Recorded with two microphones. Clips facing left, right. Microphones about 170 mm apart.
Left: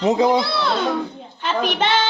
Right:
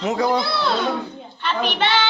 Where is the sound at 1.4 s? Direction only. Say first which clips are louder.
Left 1 dB; 45° left (ahead or behind).